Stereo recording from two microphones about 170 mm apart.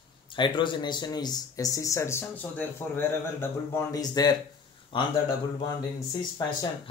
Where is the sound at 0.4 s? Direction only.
25° left (ahead or behind).